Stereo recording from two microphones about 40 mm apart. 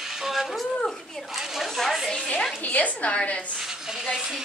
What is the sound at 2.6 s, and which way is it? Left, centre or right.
Speech, left.